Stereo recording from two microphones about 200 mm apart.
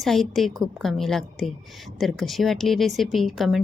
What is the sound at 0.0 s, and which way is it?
Speech, centre (ahead or behind).